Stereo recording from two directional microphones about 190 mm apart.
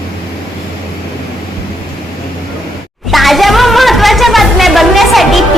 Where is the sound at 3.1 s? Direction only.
Centre (ahead or behind).